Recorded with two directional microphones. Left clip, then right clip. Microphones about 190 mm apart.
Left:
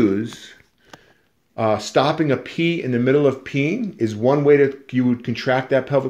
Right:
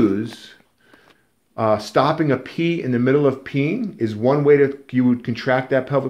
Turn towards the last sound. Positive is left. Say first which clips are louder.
# even
turn(degrees=30)  # may be behind; listen again after turning